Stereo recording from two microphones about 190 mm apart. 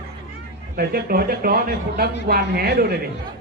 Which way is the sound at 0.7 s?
55° right (ahead or behind).